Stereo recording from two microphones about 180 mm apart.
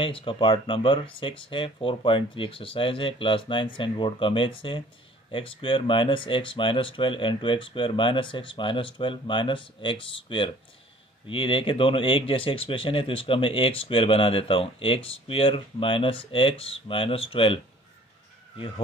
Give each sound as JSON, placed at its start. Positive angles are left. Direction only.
{"t": 0.0, "sound": "speech", "side_deg": 30}